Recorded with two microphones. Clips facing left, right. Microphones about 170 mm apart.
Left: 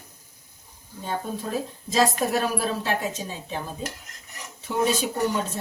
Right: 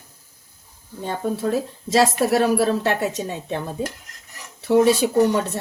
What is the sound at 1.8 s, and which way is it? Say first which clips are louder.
A woman's voice: right 5 dB; 80° right.